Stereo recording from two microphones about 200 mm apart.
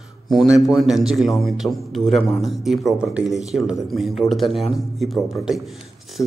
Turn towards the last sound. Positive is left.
turn(degrees=0)  # may be behind; listen again after turning